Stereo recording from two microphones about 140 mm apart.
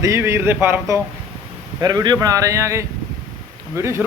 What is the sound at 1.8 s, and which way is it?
Speech, 30° right (ahead or behind).